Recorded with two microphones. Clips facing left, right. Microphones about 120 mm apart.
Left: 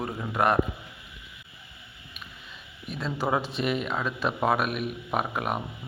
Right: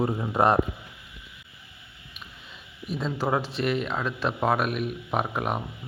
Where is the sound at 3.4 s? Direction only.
15° left (ahead or behind).